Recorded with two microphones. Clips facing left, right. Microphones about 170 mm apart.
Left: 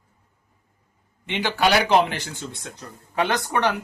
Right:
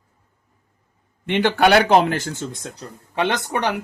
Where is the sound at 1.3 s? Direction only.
55° right (ahead or behind); by 2.8 s 40° right (ahead or behind).